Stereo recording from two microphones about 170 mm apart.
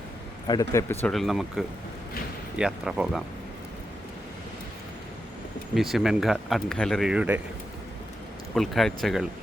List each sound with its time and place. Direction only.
0.4 s speech: 20° left (ahead or behind)
1.1 s speech: centre (ahead or behind)
5.7 s speech: centre (ahead or behind)
8.5 s speech: centre (ahead or behind)